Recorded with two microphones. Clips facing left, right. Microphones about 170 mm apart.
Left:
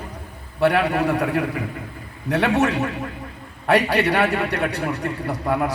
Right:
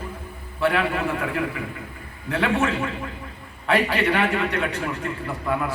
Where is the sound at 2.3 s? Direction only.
70° left (ahead or behind).